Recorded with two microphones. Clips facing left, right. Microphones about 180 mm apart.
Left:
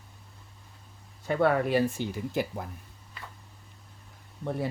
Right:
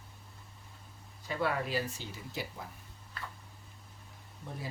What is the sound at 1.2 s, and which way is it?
Speech, 60° left (ahead or behind).